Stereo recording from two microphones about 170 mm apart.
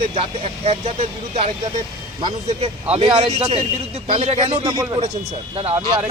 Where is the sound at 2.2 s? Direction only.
30° right (ahead or behind).